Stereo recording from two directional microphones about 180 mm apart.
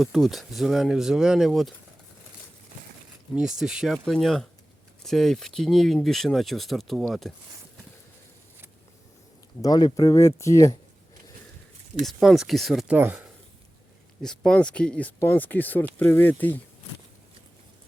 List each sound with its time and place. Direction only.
0.0 s speech: centre (ahead or behind)
3.3 s speech: 5° right (ahead or behind)
9.6 s speech: 20° left (ahead or behind)
12.0 s speech: centre (ahead or behind)
14.2 s speech: 5° left (ahead or behind)